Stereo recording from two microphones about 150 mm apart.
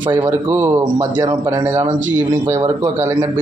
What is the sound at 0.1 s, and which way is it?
A man's voice, 20° right (ahead or behind).